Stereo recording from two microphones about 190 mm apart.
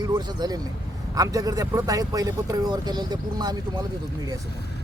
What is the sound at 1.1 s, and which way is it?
Speech, 20° right (ahead or behind).